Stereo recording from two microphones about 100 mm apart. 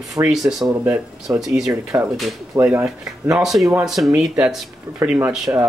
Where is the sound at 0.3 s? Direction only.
5° right (ahead or behind).